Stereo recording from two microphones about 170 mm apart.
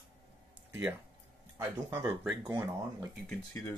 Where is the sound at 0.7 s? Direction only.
10° right (ahead or behind).